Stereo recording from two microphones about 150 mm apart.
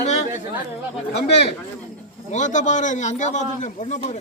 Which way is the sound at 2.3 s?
55° left (ahead or behind).